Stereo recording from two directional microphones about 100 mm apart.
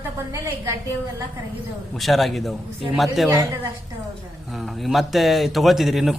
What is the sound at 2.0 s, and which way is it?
A man's voice, centre (ahead or behind).